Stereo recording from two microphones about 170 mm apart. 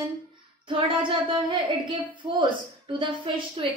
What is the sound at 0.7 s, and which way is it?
A woman's voice, 30° right (ahead or behind).